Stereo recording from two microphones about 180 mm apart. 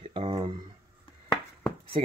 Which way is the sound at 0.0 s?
30° right (ahead or behind).